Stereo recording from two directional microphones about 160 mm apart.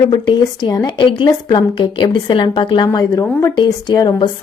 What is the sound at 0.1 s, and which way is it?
A woman's voice, 30° left (ahead or behind).